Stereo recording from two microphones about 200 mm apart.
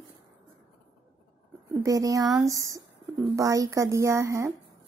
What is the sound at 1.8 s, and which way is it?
Speech, 15° right (ahead or behind).